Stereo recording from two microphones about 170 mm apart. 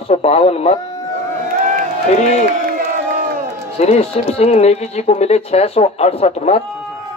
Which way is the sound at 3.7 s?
40° left (ahead or behind).